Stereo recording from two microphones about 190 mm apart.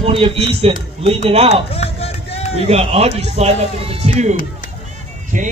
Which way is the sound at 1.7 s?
30° left (ahead or behind).